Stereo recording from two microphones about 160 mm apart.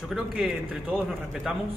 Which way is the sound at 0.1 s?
5° right (ahead or behind).